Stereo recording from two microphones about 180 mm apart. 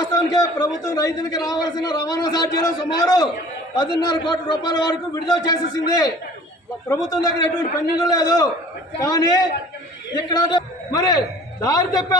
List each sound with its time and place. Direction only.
0.0 s a man's voice: 20° left (ahead or behind)